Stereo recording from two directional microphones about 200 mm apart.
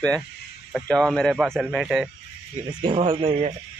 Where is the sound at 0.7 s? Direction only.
Centre (ahead or behind).